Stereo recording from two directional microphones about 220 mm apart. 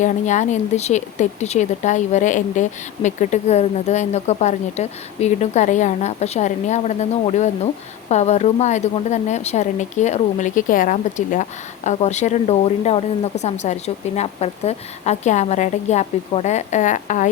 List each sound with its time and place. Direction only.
0.0 s speech: 35° left (ahead or behind)